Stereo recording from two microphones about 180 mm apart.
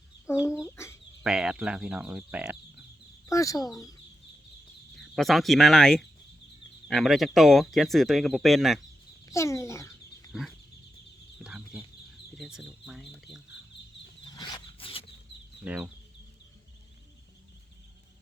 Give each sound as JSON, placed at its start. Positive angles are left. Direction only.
{"t": 0.4, "sound": "speech", "side_deg": 15}
{"t": 1.2, "sound": "speech", "side_deg": -5}
{"t": 3.2, "sound": "speech", "side_deg": 20}
{"t": 4.9, "sound": "speech", "side_deg": 0}
{"t": 9.2, "sound": "a child's voice", "side_deg": 15}
{"t": 11.3, "sound": "chicken", "side_deg": -5}
{"t": 12.4, "sound": "speech", "side_deg": -5}
{"t": 14.3, "sound": "zipper", "side_deg": 25}
{"t": 15.6, "sound": "speech", "side_deg": -5}